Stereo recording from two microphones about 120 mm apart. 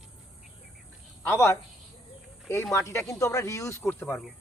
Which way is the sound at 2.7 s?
25° left (ahead or behind).